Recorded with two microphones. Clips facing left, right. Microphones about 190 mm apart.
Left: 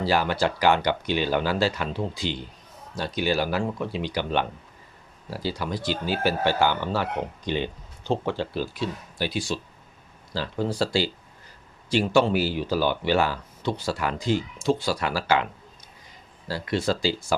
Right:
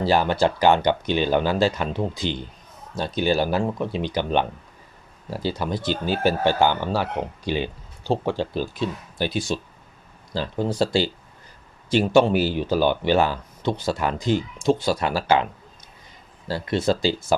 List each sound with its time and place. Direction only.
0.1 s speech: 20° right (ahead or behind)
16.5 s speech: 25° right (ahead or behind)